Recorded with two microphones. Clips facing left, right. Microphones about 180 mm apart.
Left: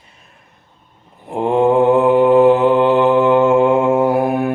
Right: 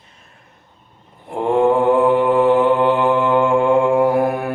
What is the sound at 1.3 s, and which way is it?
Mantra, 20° left (ahead or behind).